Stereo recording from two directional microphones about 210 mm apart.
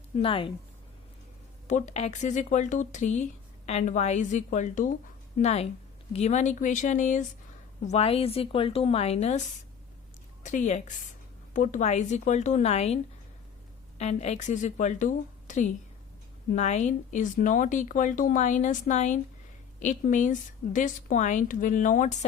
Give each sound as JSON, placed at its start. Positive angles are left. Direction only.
{"t": 0.2, "sound": "a woman's voice", "side_deg": 25}
{"t": 1.6, "sound": "a woman's voice", "side_deg": 35}
{"t": 10.4, "sound": "a woman's voice", "side_deg": 35}
{"t": 14.0, "sound": "a woman's voice", "side_deg": 30}